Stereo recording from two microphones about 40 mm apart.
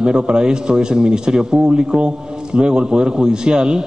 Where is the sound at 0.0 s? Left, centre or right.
Centre.